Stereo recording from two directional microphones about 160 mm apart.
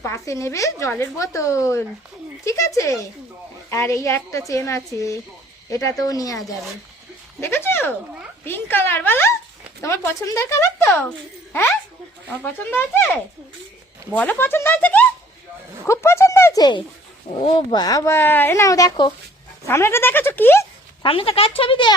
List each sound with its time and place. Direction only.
0.0 s a woman's voice: 15° left (ahead or behind)
7.4 s speech: 15° left (ahead or behind)
12.4 s speech: 10° left (ahead or behind)
14.1 s a woman's voice: 10° left (ahead or behind)
21.0 s speech: 35° left (ahead or behind)